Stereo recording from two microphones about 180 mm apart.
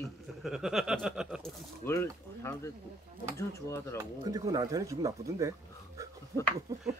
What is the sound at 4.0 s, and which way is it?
Speech, 20° right (ahead or behind).